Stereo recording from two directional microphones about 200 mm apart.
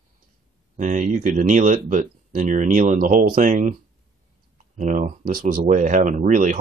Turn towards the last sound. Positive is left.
turn(degrees=-40)  # may be behind; listen again after turning